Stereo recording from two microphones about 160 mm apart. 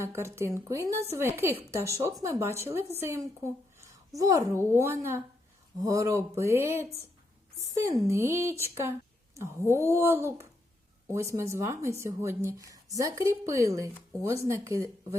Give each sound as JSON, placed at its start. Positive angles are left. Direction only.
{"t": 0.0, "sound": "a woman's voice", "side_deg": -15}
{"t": 7.9, "sound": "speech", "side_deg": -20}